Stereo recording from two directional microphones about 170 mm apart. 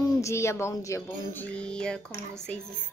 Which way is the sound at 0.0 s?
15° left (ahead or behind).